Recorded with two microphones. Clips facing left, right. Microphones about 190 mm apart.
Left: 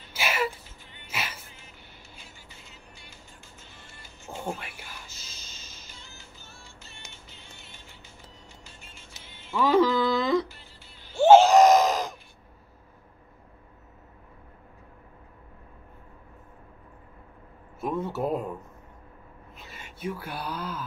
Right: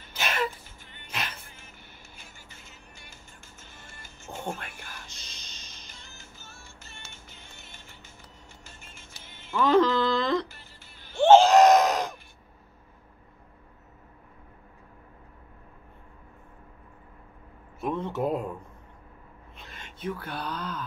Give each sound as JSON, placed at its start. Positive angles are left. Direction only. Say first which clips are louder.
{"t": 0.1, "sound": "a sound", "louder": "left 1 dB", "side_deg": 5}
{"t": 1.0, "sound": "music", "louder": "even", "side_deg": 5}
{"t": 1.5, "sound": "music", "louder": "even", "side_deg": -50}
{"t": 4.3, "sound": "music", "louder": "left 1 dB", "side_deg": 5}
{"t": 6.0, "sound": "music", "louder": "even", "side_deg": -50}
{"t": 9.1, "sound": "music", "louder": "even", "side_deg": 20}
{"t": 9.5, "sound": "music", "louder": "even", "side_deg": 5}
{"t": 10.5, "sound": "music", "louder": "left 1 dB", "side_deg": -50}
{"t": 11.1, "sound": "gasp", "louder": "left 1 dB", "side_deg": 10}
{"t": 17.7, "sound": "a sound", "louder": "even", "side_deg": 5}
{"t": 19.5, "sound": "a sound", "louder": "left 1 dB", "side_deg": 5}